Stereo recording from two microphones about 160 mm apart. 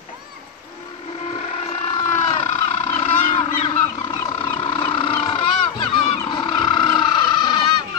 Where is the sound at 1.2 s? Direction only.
45° left (ahead or behind).